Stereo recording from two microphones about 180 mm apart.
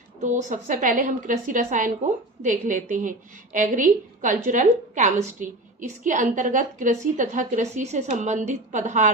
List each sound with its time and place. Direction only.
0.2 s a woman's voice: 40° right (ahead or behind)